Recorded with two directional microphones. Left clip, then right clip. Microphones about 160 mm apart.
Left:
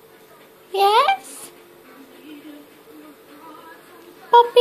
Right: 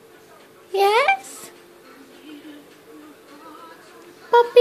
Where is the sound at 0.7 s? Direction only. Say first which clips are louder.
Left 1 dB; 25° right (ahead or behind).